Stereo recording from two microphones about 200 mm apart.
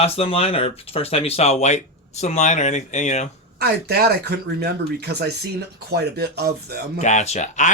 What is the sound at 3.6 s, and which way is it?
Speech, 55° right (ahead or behind).